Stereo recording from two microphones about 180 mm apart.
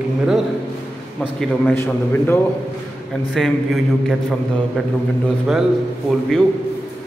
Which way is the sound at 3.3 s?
Centre (ahead or behind).